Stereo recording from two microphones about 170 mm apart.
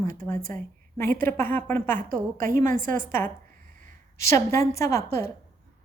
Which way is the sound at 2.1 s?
55° right (ahead or behind).